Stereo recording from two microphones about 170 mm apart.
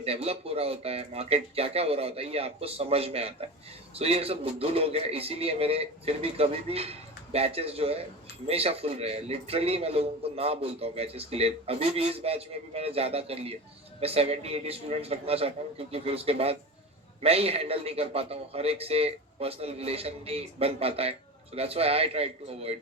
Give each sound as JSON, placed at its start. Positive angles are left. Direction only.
{"t": 0.0, "sound": "a man's voice", "side_deg": -35}